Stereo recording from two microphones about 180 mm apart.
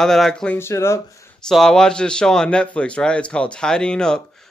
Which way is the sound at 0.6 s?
15° left (ahead or behind).